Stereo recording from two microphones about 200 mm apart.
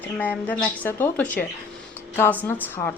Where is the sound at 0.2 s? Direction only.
10° left (ahead or behind).